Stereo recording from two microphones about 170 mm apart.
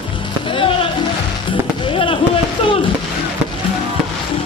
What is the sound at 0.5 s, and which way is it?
Music, 30° left (ahead or behind).